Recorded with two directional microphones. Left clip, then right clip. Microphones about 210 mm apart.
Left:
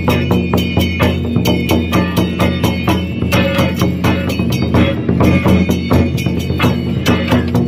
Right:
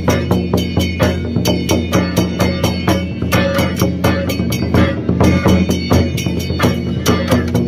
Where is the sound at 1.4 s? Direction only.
15° left (ahead or behind).